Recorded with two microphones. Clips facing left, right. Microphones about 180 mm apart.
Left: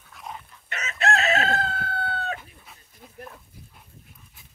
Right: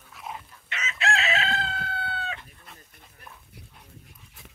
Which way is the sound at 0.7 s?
40° left (ahead or behind).